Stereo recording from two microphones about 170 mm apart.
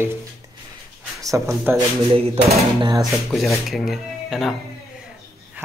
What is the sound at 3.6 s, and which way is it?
Speech, centre (ahead or behind).